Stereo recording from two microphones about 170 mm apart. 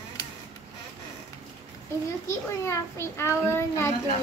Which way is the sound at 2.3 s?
15° left (ahead or behind).